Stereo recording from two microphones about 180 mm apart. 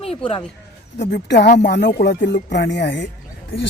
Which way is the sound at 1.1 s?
70° left (ahead or behind).